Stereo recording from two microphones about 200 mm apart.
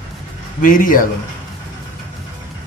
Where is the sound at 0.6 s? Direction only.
45° left (ahead or behind).